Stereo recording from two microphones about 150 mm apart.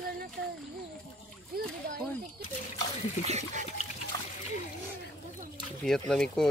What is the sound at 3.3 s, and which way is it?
Pig, 50° right (ahead or behind).